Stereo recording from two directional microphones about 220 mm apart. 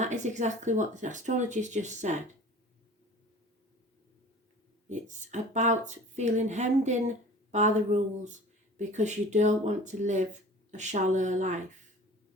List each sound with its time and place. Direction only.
0.0 s speech: 35° right (ahead or behind)
4.9 s speech: 35° right (ahead or behind)